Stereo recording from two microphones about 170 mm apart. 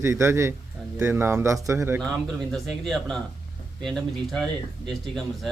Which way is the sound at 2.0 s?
Centre (ahead or behind).